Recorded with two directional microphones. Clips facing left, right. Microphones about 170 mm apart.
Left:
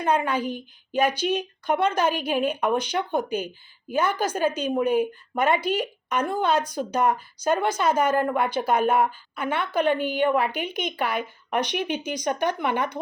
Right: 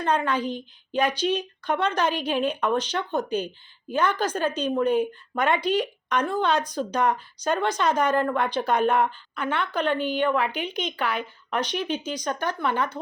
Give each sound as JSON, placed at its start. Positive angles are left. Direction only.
{"t": 0.0, "sound": "a woman's voice", "side_deg": 10}